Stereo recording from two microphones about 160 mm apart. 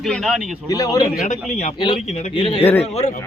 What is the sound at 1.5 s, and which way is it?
Speech, 45° left (ahead or behind).